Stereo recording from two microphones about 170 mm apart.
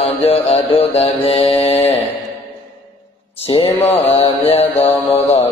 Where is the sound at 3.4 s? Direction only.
35° left (ahead or behind).